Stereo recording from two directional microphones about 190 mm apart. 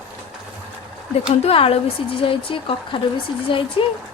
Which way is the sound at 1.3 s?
30° left (ahead or behind).